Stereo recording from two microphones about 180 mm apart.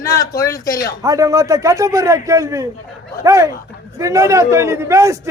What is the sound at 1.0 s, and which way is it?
A man's voice, 20° right (ahead or behind).